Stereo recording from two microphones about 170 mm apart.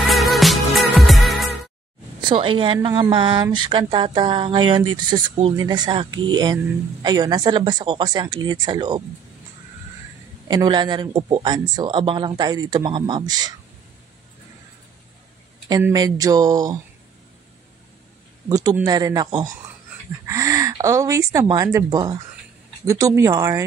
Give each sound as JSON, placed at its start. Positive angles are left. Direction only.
{"t": 0.0, "sound": "music", "side_deg": 0}
{"t": 2.2, "sound": "speech", "side_deg": -30}
{"t": 10.5, "sound": "speech", "side_deg": -25}
{"t": 15.9, "sound": "speech", "side_deg": -20}
{"t": 18.5, "sound": "speech", "side_deg": -20}